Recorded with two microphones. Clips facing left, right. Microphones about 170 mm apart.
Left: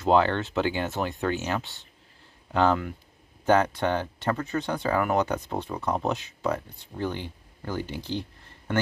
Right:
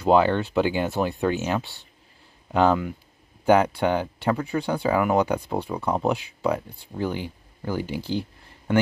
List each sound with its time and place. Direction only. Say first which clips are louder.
0.0 s speech: right 3 dB; 15° right (ahead or behind)
1.6 s speech: right 4 dB; 20° left (ahead or behind)
2.5 s speech: right 3 dB; 10° right (ahead or behind)